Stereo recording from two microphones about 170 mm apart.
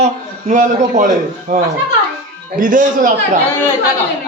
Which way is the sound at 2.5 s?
50° right (ahead or behind).